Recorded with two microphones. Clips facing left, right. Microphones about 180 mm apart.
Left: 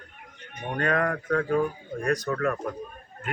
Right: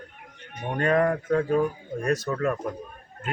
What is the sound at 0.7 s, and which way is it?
Speech, 25° right (ahead or behind).